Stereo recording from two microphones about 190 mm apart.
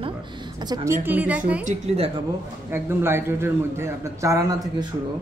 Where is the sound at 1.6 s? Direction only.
35° right (ahead or behind).